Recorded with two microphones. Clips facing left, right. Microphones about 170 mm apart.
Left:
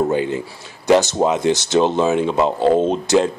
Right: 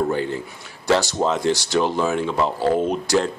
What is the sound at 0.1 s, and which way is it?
Speech, 20° left (ahead or behind).